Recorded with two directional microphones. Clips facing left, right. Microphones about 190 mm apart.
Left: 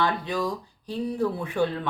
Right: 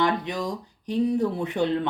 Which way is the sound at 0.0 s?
20° right (ahead or behind).